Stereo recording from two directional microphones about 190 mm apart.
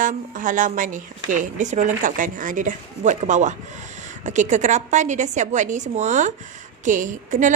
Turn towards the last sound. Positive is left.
turn(degrees=-40)  # may be behind; listen again after turning